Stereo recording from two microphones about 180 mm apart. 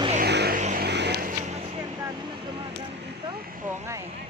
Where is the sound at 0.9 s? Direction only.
70° right (ahead or behind).